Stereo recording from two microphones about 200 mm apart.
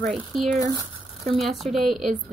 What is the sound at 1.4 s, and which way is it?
Speech, centre (ahead or behind).